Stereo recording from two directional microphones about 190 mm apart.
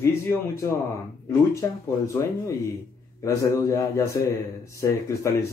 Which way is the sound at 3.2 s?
15° left (ahead or behind).